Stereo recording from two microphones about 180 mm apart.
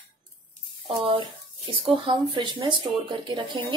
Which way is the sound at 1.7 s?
30° right (ahead or behind).